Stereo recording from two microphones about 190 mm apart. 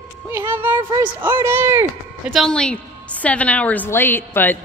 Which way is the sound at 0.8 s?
25° right (ahead or behind).